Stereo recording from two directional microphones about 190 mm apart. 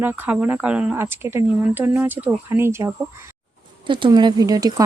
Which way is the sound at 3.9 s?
25° right (ahead or behind).